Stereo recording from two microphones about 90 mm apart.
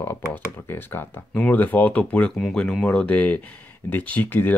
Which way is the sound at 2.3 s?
5° left (ahead or behind).